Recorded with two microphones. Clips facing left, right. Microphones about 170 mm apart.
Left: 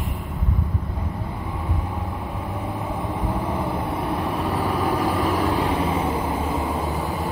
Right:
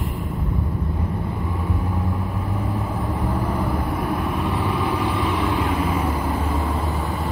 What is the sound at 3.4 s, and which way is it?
Vehicle, 25° left (ahead or behind).